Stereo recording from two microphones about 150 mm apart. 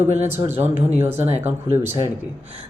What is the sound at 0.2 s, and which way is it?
Speech, 15° right (ahead or behind).